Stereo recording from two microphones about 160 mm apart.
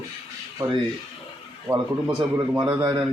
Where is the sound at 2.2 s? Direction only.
25° right (ahead or behind).